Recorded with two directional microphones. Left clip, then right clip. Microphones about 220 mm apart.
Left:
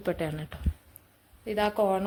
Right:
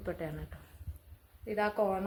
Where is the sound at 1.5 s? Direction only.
45° left (ahead or behind).